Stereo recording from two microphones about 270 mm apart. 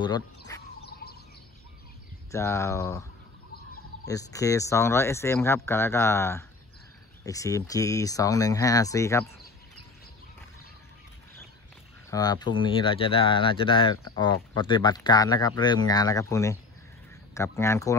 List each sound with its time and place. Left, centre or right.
0.8 s bird: left
2.3 s speech: centre
4.1 s speech: centre
12.1 s speech: centre